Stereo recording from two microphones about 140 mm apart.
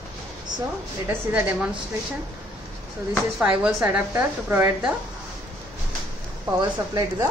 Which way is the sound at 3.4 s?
10° right (ahead or behind).